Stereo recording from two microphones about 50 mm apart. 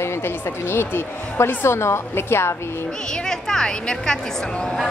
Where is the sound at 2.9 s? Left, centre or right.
Centre.